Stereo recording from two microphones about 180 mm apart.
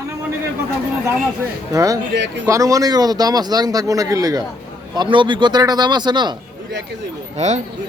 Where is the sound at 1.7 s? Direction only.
20° right (ahead or behind).